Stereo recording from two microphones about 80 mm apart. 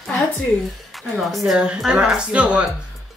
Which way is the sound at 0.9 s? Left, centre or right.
Centre.